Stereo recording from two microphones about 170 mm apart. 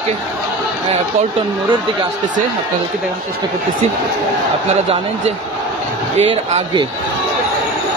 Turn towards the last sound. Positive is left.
turn(degrees=-40)  # may be behind; listen again after turning